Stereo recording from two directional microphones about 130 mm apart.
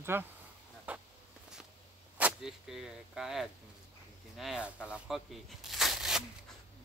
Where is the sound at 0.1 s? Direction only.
15° right (ahead or behind).